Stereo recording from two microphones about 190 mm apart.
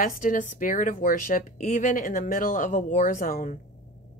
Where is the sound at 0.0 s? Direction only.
45° left (ahead or behind).